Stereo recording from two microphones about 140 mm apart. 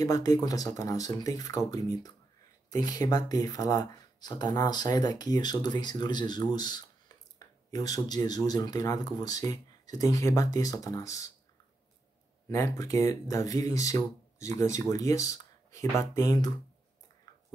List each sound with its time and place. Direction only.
0.0 s speech: 25° left (ahead or behind)
12.4 s speech: 20° left (ahead or behind)